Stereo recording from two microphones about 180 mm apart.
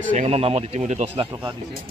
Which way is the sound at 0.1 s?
40° right (ahead or behind).